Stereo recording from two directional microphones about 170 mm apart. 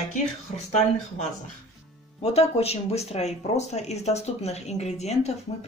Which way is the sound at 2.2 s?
35° left (ahead or behind).